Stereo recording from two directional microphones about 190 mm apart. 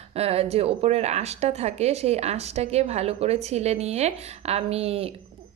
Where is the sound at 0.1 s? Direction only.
30° right (ahead or behind).